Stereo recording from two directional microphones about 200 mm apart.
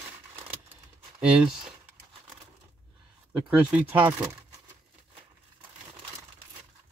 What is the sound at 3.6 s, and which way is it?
Speech, 5° right (ahead or behind).